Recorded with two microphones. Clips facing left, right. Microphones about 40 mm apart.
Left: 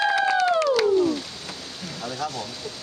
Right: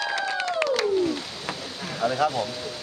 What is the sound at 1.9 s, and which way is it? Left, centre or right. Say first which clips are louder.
Speech: right 7 dB; right.